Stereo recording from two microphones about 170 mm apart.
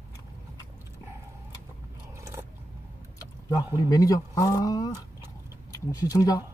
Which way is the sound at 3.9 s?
20° left (ahead or behind).